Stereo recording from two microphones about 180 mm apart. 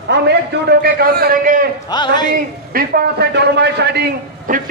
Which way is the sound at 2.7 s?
60° right (ahead or behind).